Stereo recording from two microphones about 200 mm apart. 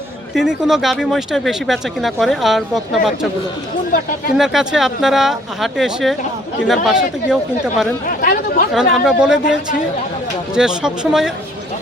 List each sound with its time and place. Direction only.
0.3 s speech: centre (ahead or behind)
4.4 s speech: centre (ahead or behind)
8.0 s speech: 45° left (ahead or behind)
8.7 s speech: centre (ahead or behind)